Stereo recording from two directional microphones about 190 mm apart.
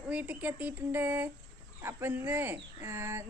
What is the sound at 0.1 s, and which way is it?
Speech, 10° right (ahead or behind).